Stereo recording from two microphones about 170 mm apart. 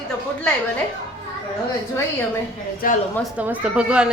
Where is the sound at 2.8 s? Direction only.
60° left (ahead or behind).